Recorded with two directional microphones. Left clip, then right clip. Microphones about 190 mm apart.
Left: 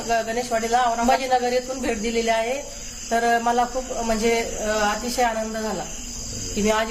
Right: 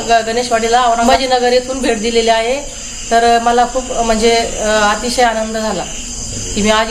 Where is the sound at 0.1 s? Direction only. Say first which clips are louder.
Right 10 dB; 10° right (ahead or behind).